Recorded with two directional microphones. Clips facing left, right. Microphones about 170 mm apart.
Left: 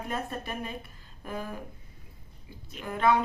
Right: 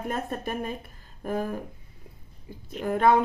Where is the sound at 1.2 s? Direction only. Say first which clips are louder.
Right 8 dB; 45° right (ahead or behind).